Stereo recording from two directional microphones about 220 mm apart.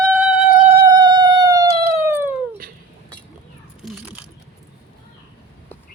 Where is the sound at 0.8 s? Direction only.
20° right (ahead or behind).